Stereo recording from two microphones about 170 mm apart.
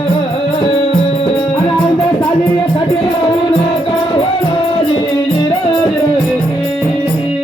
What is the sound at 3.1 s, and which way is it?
Music, 35° left (ahead or behind).